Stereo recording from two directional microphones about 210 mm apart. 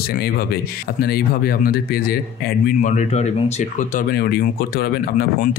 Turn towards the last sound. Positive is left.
turn(degrees=45)  # may be behind; listen again after turning